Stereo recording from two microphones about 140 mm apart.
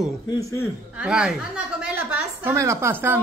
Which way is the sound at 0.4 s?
20° left (ahead or behind).